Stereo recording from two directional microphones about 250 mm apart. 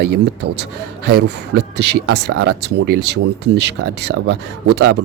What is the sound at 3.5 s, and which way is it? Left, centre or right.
Speech, right.